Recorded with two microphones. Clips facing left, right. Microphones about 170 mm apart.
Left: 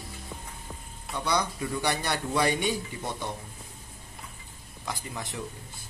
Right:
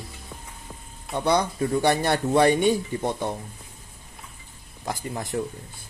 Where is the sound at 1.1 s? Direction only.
25° right (ahead or behind).